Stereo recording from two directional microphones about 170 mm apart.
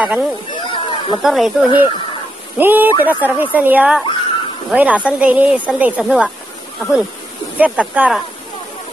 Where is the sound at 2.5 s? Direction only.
10° right (ahead or behind).